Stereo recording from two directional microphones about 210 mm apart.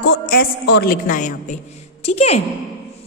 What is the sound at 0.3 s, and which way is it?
A woman's voice, 45° left (ahead or behind).